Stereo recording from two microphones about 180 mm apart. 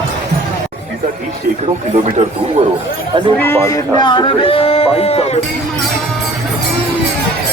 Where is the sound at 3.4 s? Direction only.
15° left (ahead or behind); by 5.3 s 35° left (ahead or behind).